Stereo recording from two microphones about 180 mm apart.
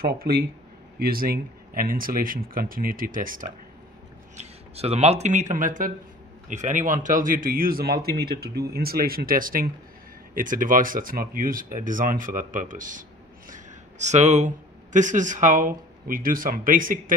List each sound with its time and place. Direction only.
0.0 s a man's voice: 55° right (ahead or behind)
4.4 s a man's voice: 35° right (ahead or behind)